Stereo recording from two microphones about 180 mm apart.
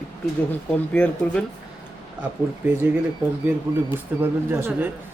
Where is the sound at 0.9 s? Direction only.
5° left (ahead or behind).